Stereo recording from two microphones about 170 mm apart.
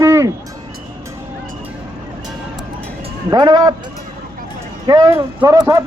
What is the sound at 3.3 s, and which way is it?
Speech, 25° right (ahead or behind).